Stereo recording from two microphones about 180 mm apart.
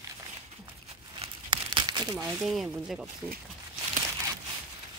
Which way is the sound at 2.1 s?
Centre (ahead or behind).